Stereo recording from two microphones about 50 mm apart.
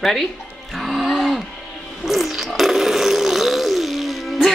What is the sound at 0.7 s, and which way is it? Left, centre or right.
Music, centre.